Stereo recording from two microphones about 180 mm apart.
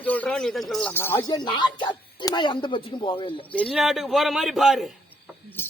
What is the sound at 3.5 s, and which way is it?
A man's voice, 5° left (ahead or behind).